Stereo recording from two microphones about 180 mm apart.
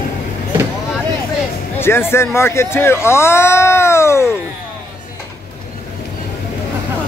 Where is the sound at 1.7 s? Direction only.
15° left (ahead or behind).